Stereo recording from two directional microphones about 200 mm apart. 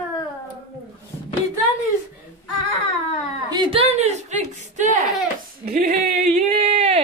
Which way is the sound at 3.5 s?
25° right (ahead or behind).